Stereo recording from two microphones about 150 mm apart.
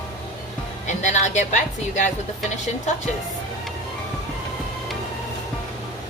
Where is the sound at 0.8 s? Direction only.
55° left (ahead or behind).